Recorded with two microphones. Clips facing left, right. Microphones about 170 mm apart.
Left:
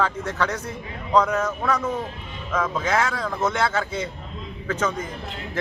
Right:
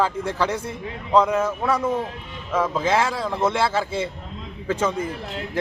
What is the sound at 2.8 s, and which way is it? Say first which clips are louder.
A man's voice: right 2 dB; 30° right (ahead or behind).